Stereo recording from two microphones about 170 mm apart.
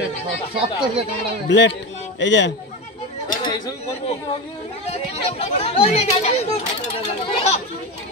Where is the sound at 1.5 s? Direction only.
90° left.